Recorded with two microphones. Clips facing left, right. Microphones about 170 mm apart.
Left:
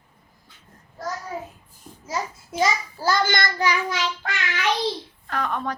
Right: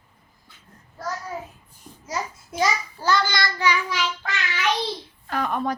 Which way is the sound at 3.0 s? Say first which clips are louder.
Left 1 dB; 45° left (ahead or behind).